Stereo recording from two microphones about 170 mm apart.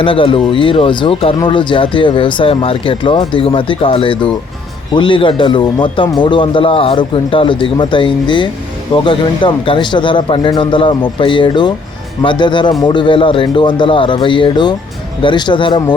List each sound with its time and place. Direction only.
0.0 s speech: 30° left (ahead or behind)